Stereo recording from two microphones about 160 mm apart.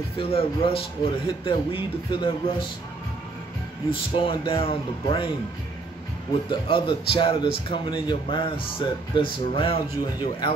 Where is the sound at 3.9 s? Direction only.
35° left (ahead or behind).